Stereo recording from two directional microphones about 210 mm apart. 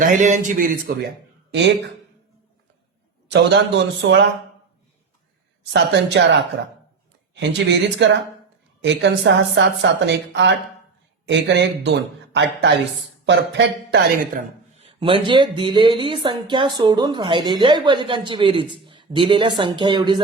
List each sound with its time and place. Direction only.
0.0 s a man's voice: 35° right (ahead or behind)
3.2 s speech: 55° right (ahead or behind)
5.7 s speech: 55° right (ahead or behind)
14.8 s speech: 25° right (ahead or behind)